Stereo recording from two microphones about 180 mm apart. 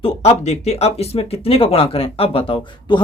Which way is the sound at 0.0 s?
35° left (ahead or behind).